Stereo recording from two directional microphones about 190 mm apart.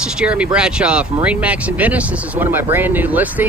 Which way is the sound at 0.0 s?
5° right (ahead or behind).